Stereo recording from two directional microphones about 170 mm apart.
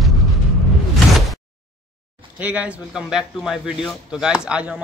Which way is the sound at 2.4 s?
10° right (ahead or behind).